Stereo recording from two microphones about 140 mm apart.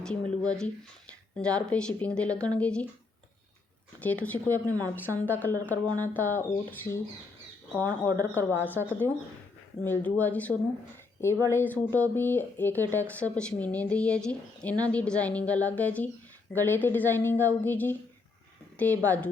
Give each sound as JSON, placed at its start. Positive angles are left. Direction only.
{"t": 0.0, "sound": "speech", "side_deg": 5}
{"t": 4.0, "sound": "speech", "side_deg": 10}
{"t": 7.8, "sound": "speech", "side_deg": -25}
{"t": 8.7, "sound": "speech", "side_deg": -15}
{"t": 9.8, "sound": "speech", "side_deg": 15}